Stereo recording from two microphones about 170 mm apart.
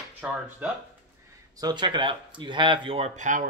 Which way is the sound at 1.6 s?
25° right (ahead or behind).